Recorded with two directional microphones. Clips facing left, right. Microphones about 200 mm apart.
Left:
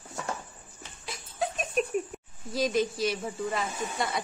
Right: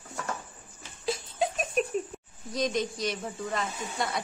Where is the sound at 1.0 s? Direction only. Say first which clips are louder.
Right 4 dB; 30° right (ahead or behind).